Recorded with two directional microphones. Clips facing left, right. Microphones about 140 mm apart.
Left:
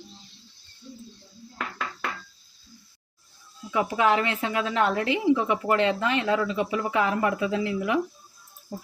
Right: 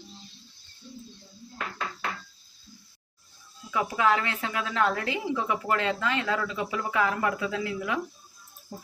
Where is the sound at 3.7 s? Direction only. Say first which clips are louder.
Left 2 dB; 25° left (ahead or behind).